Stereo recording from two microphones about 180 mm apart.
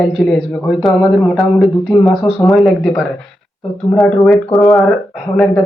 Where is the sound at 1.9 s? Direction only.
15° left (ahead or behind).